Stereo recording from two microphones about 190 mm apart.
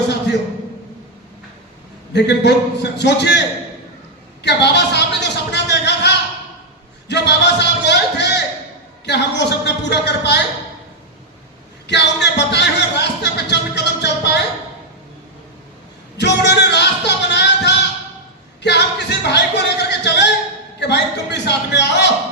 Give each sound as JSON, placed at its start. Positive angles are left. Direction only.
{"t": 2.1, "sound": "a man's voice", "side_deg": 65}
{"t": 4.4, "sound": "a sound", "side_deg": 65}
{"t": 7.1, "sound": "music", "side_deg": 65}
{"t": 9.0, "sound": "a man's voice", "side_deg": 65}
{"t": 11.9, "sound": "music", "side_deg": 65}
{"t": 16.1, "sound": "music", "side_deg": 65}
{"t": 18.6, "sound": "a sound", "side_deg": 65}
{"t": 20.7, "sound": "a man's voice", "side_deg": 65}